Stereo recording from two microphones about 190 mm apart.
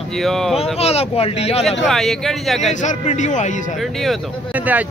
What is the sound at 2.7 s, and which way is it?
Speech, 40° left (ahead or behind).